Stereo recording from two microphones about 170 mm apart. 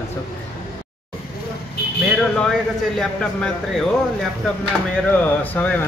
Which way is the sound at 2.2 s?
5° left (ahead or behind).